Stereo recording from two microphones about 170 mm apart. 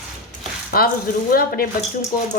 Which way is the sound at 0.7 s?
60° left (ahead or behind).